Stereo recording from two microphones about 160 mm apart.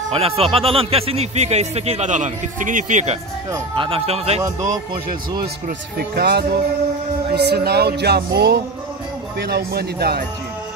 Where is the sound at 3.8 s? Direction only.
35° right (ahead or behind).